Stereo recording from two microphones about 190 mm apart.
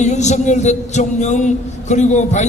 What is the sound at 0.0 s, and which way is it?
A man's voice, 35° left (ahead or behind).